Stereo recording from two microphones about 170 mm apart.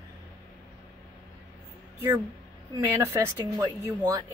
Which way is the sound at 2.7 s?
15° right (ahead or behind).